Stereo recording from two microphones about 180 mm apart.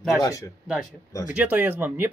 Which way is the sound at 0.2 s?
20° left (ahead or behind).